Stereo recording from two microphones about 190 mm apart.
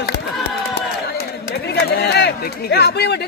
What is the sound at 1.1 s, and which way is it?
Speech, 55° left (ahead or behind).